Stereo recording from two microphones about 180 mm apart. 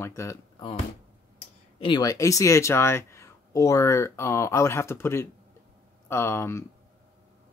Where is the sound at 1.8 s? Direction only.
25° left (ahead or behind).